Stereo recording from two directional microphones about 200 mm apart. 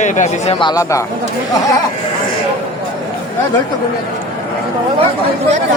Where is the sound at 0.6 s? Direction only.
20° left (ahead or behind).